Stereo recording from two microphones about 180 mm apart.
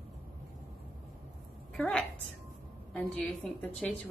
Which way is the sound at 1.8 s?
5° left (ahead or behind).